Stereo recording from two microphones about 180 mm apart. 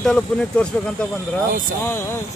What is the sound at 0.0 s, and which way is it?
Speech, 5° left (ahead or behind).